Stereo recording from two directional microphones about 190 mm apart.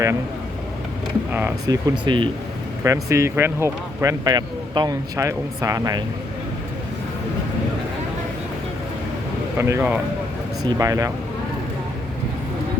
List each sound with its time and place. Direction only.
1.3 s speech: 10° right (ahead or behind)
9.6 s speech: 15° right (ahead or behind)